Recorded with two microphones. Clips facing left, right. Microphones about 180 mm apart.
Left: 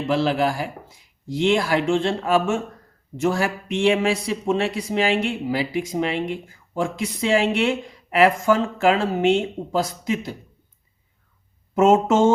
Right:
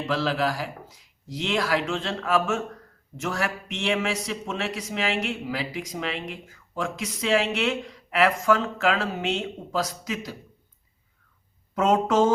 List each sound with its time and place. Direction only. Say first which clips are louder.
0.1 s a man's voice: left 5 dB; 25° left (ahead or behind)
11.7 s a man's voice: left 5 dB; 25° left (ahead or behind)